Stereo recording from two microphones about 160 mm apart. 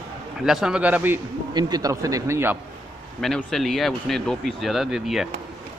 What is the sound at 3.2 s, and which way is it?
Speech, centre (ahead or behind).